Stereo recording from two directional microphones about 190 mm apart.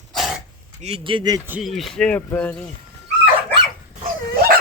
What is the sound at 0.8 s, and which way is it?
Speech, 30° right (ahead or behind).